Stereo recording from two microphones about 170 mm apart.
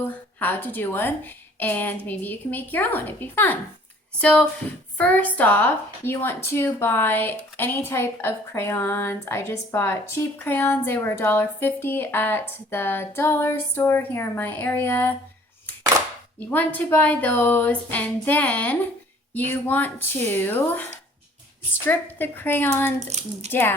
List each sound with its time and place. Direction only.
0.0 s speech: 10° left (ahead or behind)
16.4 s speech: 10° left (ahead or behind)
21.8 s speech: 10° left (ahead or behind)
23.0 s speech: 40° right (ahead or behind)
23.5 s speech: 15° left (ahead or behind)